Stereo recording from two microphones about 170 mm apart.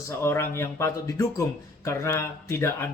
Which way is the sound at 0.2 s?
15° left (ahead or behind).